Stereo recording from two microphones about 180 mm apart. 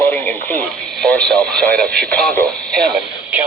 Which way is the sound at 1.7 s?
60° right (ahead or behind).